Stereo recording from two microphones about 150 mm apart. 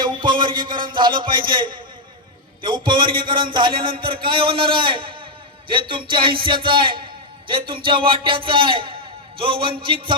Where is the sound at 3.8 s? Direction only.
35° right (ahead or behind).